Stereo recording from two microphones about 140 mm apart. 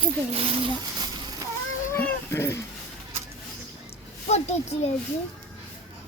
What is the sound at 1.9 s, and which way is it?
Cat, 20° left (ahead or behind).